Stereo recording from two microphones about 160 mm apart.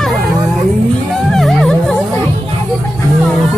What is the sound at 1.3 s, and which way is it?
Music, centre (ahead or behind).